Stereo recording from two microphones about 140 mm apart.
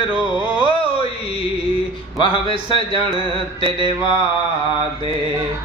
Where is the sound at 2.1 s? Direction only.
40° left (ahead or behind).